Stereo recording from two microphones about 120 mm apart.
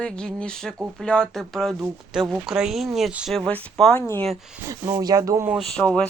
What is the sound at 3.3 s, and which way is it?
Speech, 5° left (ahead or behind).